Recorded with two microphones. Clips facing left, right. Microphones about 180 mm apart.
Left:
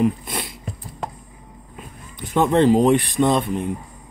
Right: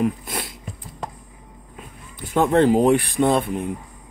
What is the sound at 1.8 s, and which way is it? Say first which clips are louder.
Speech: left 2 dB; 5° right (ahead or behind).